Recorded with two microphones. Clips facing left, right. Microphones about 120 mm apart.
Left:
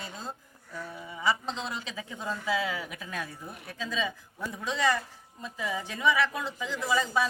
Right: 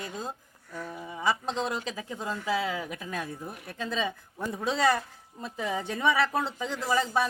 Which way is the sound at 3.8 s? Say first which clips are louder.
Right 2 dB; 60° right (ahead or behind).